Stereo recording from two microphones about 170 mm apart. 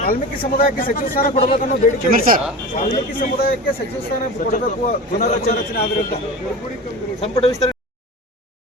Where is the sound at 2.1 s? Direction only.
55° right (ahead or behind).